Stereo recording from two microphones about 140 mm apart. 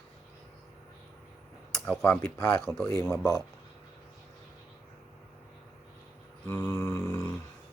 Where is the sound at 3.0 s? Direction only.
20° left (ahead or behind).